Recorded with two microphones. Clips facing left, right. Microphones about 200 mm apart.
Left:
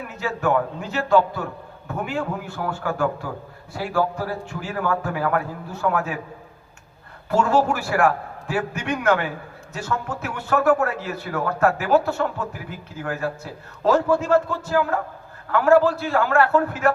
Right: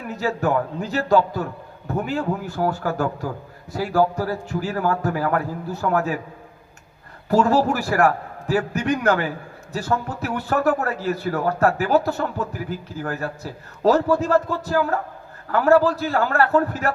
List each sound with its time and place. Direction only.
0.1 s a man's voice: 35° right (ahead or behind)
7.3 s a man's voice: 35° right (ahead or behind)